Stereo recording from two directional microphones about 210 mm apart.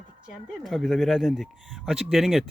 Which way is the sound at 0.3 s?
Centre (ahead or behind).